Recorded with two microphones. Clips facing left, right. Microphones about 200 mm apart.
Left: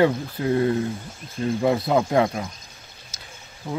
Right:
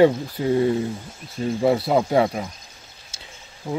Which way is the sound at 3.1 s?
30° right (ahead or behind).